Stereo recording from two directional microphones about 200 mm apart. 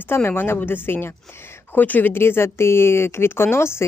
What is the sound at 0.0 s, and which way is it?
A woman's voice, 10° left (ahead or behind).